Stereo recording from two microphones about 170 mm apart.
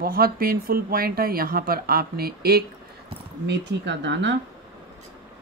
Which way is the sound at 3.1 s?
90° right.